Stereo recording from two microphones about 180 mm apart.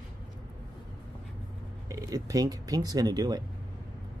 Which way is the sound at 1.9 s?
20° right (ahead or behind).